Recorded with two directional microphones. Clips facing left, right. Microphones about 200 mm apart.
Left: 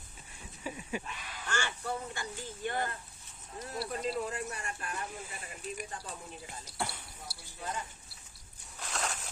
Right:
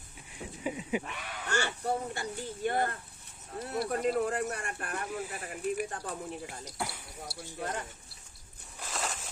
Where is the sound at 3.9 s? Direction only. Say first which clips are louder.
Right 6 dB; 60° right (ahead or behind).